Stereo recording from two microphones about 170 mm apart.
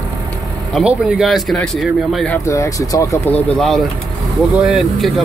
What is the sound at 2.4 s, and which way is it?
Speech, 20° left (ahead or behind).